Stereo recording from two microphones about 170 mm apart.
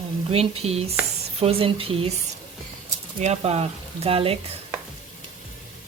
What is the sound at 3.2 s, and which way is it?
Speech, 40° right (ahead or behind).